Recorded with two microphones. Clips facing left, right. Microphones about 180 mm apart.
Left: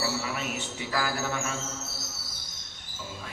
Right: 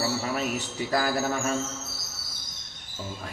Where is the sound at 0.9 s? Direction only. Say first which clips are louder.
Right 4 dB; 40° right (ahead or behind).